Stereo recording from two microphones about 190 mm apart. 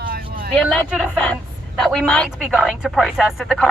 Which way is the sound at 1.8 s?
Centre (ahead or behind).